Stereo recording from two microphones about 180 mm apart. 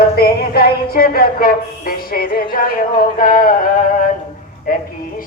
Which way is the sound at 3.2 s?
50° left (ahead or behind).